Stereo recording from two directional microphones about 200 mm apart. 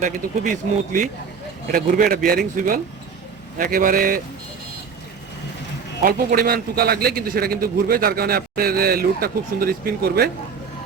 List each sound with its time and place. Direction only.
0.0 s a man's voice: 40° right (ahead or behind)
6.0 s a man's voice: 45° right (ahead or behind)